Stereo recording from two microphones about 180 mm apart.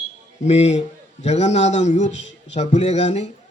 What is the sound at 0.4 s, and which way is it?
A man's voice, 40° left (ahead or behind).